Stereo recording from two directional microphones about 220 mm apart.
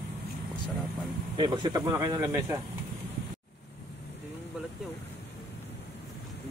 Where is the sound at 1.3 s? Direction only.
20° right (ahead or behind).